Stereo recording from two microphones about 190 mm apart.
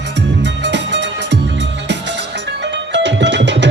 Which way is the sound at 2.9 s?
70° right (ahead or behind).